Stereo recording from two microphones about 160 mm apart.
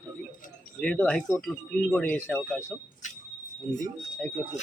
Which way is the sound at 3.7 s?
50° left (ahead or behind).